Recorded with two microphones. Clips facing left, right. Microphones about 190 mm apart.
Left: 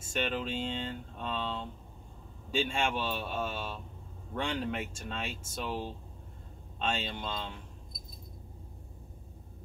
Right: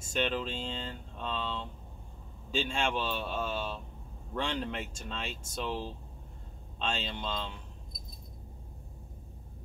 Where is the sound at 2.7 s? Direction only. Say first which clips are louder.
Even; 5° left (ahead or behind).